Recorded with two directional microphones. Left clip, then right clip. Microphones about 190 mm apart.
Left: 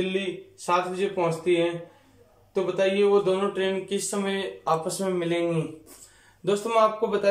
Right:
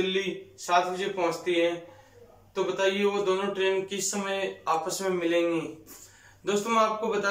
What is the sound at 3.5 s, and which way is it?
Speech, 30° left (ahead or behind).